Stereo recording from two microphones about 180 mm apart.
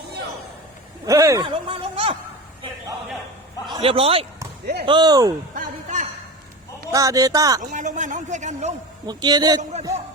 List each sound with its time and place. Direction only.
1.0 s speech: 15° right (ahead or behind)
1.5 s speech: 30° right (ahead or behind)
3.8 s speech: 35° right (ahead or behind)
4.6 s speech: 65° right (ahead or behind)
4.9 s speech: 25° right (ahead or behind)
5.5 s a sound: 45° right (ahead or behind)
6.9 s speech: 20° right (ahead or behind)
7.6 s speech: 45° right (ahead or behind)
9.0 s speech: 25° right (ahead or behind)